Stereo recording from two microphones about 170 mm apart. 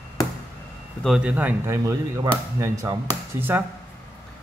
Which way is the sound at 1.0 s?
5° right (ahead or behind).